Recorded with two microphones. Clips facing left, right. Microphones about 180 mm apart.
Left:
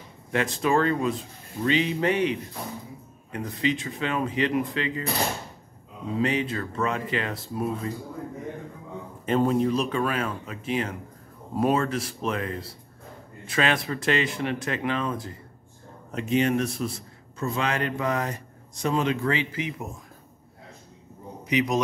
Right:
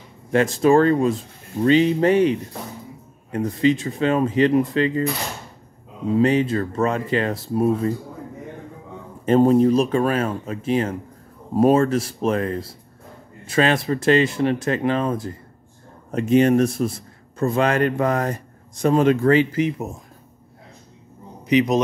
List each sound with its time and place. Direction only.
0.3 s speech: 40° right (ahead or behind)
6.1 s speech: 40° right (ahead or behind)
9.2 s a man's voice: 40° right (ahead or behind)
21.5 s a man's voice: 25° right (ahead or behind)